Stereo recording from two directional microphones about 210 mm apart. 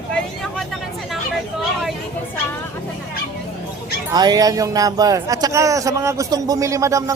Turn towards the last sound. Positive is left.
turn(degrees=-15)  # may be behind; listen again after turning